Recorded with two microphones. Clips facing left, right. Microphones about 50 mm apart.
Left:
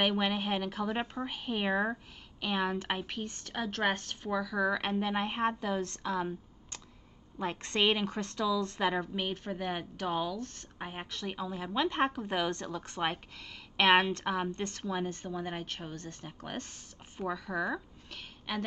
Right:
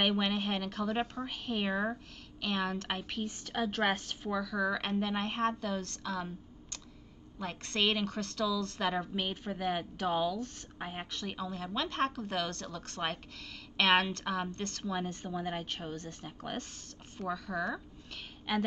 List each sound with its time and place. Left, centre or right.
0.0 s a woman's voice: centre
9.0 s a woman's voice: centre